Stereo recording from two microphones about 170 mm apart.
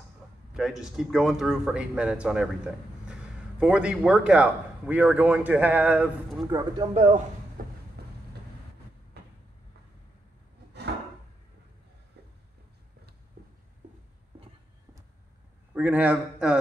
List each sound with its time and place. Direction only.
0.6 s a man's voice: centre (ahead or behind)
6.4 s a man's voice: 20° right (ahead or behind)
6.8 s a man's voice: 35° right (ahead or behind)
7.6 s a sound: 55° right (ahead or behind)
8.0 s vehicle: 70° right (ahead or behind)
15.7 s a man's voice: 10° right (ahead or behind)